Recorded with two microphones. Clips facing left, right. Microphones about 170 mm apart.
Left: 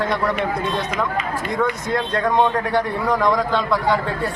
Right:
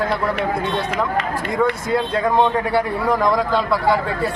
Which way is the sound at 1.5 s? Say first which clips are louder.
Right 3 dB; 5° right (ahead or behind).